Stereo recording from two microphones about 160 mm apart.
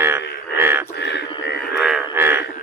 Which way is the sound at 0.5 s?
15° right (ahead or behind).